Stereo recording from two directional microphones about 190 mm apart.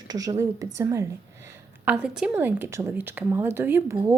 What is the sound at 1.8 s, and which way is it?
A woman's voice, 5° right (ahead or behind).